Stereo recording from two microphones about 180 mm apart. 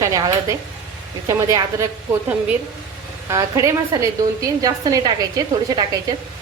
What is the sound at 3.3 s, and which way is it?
A woman's voice, 15° right (ahead or behind).